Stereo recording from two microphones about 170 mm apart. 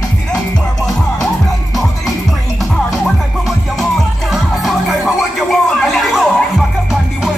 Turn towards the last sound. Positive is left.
turn(degrees=0)  # may be behind; listen again after turning